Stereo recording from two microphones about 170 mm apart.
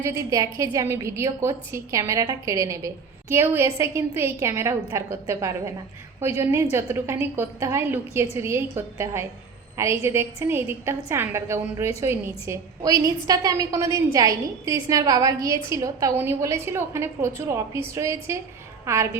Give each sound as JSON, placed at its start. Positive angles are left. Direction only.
{"t": 0.0, "sound": "a woman's voice", "side_deg": -15}